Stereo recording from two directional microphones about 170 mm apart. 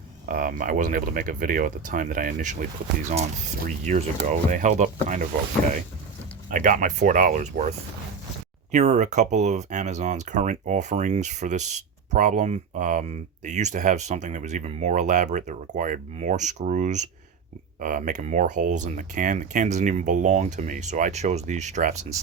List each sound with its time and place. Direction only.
0.3 s speech: 55° right (ahead or behind)
4.3 s speech: 45° right (ahead or behind)
6.5 s speech: 50° right (ahead or behind)
8.7 s speech: 40° right (ahead or behind)